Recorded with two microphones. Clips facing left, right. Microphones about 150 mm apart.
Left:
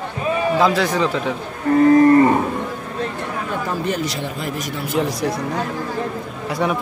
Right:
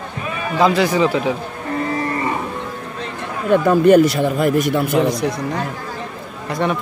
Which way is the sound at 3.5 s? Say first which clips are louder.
Right 14 dB; 60° right (ahead or behind).